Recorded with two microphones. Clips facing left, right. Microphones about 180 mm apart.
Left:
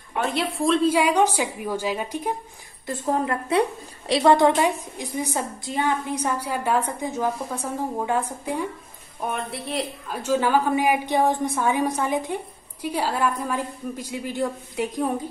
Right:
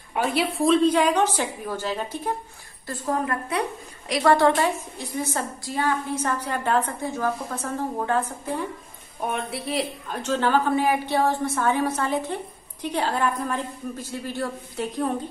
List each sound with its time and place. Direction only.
0.1 s a woman's voice: 5° right (ahead or behind); by 2.3 s 15° left (ahead or behind)
2.9 s a woman's voice: 25° left (ahead or behind)
9.2 s a woman's voice: centre (ahead or behind)